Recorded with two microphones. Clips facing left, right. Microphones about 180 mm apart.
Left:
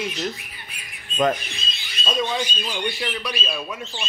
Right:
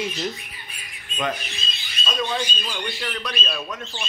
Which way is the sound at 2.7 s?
10° left (ahead or behind).